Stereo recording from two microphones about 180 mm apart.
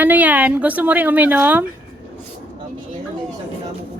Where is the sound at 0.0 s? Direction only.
10° right (ahead or behind).